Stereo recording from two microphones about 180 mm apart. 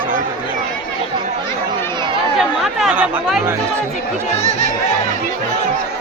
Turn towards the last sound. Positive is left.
turn(degrees=40)  # may be behind; listen again after turning